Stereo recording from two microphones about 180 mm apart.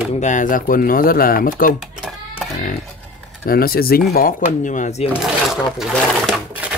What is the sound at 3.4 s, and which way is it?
Speech, 55° left (ahead or behind).